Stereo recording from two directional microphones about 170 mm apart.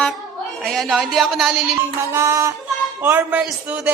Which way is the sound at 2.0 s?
15° right (ahead or behind).